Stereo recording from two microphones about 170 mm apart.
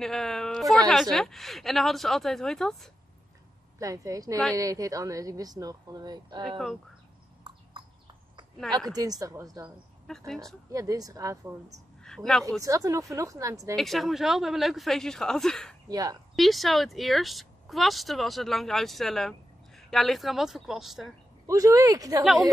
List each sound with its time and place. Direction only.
0.0 s speech: centre (ahead or behind)
3.8 s a woman's voice: 20° right (ahead or behind)
8.7 s a woman's voice: 20° right (ahead or behind)
10.0 s speech: centre (ahead or behind)
10.7 s a woman's voice: 20° right (ahead or behind)
12.0 s speech: 5° left (ahead or behind)
12.6 s a woman's voice: 20° right (ahead or behind)
13.7 s speech: centre (ahead or behind)
15.9 s a woman's voice: 20° right (ahead or behind)
16.3 s speech: centre (ahead or behind)
21.5 s a woman's voice: 20° right (ahead or behind)
22.2 s speech: centre (ahead or behind)